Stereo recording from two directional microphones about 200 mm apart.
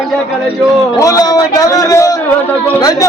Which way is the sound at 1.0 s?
15° left (ahead or behind).